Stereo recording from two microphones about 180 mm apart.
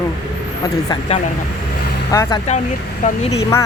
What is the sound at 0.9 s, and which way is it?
Speech, 25° left (ahead or behind).